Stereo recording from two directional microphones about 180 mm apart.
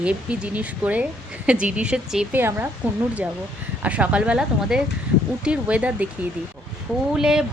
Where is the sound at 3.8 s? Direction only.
5° right (ahead or behind).